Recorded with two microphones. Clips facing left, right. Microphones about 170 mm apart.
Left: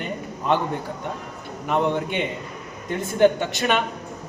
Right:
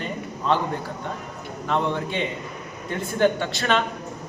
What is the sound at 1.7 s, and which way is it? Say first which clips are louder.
Speech: left 2 dB; 15° left (ahead or behind).